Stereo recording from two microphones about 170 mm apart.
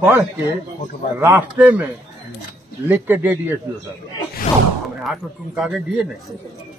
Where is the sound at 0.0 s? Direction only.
10° right (ahead or behind).